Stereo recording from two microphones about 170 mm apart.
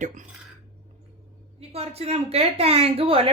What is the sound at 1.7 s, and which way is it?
A woman's voice, 35° right (ahead or behind).